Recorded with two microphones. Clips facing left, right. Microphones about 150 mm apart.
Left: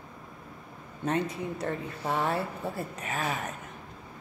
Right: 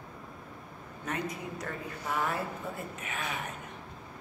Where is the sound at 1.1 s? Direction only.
30° left (ahead or behind).